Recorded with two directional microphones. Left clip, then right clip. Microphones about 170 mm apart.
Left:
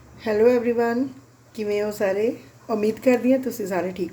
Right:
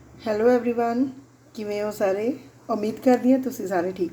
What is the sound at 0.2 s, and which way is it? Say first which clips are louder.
A woman's voice: left 2 dB; 10° left (ahead or behind).